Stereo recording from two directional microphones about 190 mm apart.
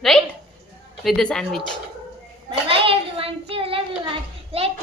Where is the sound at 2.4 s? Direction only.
30° right (ahead or behind).